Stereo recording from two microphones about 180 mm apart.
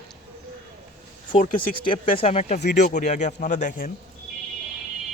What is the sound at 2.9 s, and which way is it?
Speech, 45° left (ahead or behind).